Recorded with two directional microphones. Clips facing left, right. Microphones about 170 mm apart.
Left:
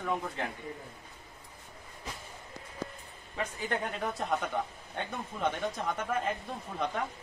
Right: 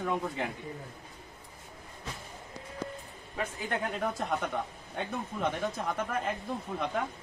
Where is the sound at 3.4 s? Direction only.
Centre (ahead or behind).